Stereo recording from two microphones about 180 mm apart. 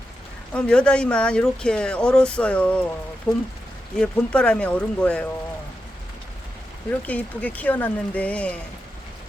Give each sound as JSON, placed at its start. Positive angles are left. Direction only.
{"t": 0.5, "sound": "speech", "side_deg": 5}
{"t": 7.0, "sound": "speech", "side_deg": 10}